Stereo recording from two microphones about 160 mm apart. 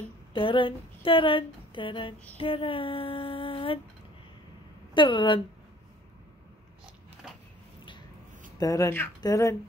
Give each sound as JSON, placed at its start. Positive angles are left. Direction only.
{"t": 0.3, "sound": "speech", "side_deg": 30}
{"t": 2.3, "sound": "female singing", "side_deg": 35}
{"t": 4.9, "sound": "female singing", "side_deg": 30}
{"t": 8.5, "sound": "speech", "side_deg": 20}